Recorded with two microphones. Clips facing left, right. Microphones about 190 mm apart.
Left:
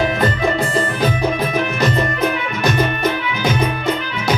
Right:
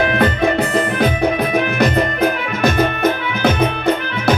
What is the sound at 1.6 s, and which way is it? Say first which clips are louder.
Music: right 2 dB; 60° right (ahead or behind).